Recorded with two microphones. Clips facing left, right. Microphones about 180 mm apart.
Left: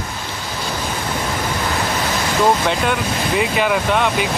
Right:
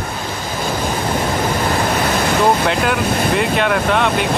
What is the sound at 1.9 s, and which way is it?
Waves, 60° right (ahead or behind).